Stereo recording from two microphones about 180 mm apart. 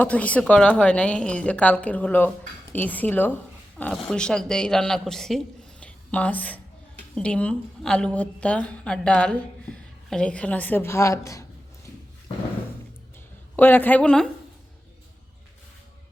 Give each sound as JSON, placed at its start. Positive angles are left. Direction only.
{"t": 0.0, "sound": "a woman's voice", "side_deg": 10}
{"t": 5.8, "sound": "a sound", "side_deg": 10}
{"t": 7.2, "sound": "a woman's voice", "side_deg": 5}
{"t": 13.6, "sound": "a woman's voice", "side_deg": 10}